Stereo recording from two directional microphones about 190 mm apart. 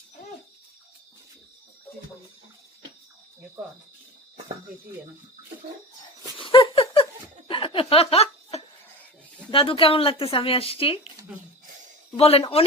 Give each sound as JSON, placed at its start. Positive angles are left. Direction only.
{"t": 6.3, "sound": "a sound", "side_deg": 25}
{"t": 9.5, "sound": "speech", "side_deg": 25}
{"t": 12.1, "sound": "a woman's voice", "side_deg": 30}